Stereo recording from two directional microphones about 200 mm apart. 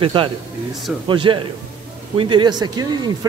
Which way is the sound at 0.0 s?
25° right (ahead or behind).